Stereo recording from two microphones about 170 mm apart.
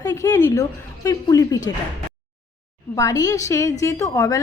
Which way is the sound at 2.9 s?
20° left (ahead or behind).